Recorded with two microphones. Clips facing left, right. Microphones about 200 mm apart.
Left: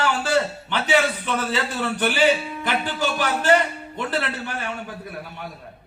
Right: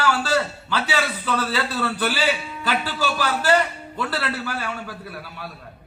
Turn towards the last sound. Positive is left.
turn(degrees=20)  # may be behind; listen again after turning